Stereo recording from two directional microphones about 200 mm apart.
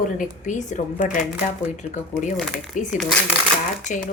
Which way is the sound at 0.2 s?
40° left (ahead or behind).